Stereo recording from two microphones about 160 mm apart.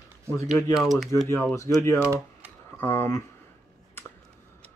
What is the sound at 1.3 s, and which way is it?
Speech, 20° left (ahead or behind).